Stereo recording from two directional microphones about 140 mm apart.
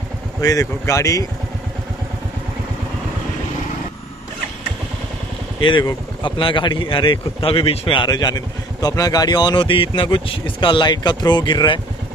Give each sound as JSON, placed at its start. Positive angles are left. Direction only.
{"t": 0.4, "sound": "speech", "side_deg": 25}
{"t": 5.6, "sound": "a man's voice", "side_deg": 35}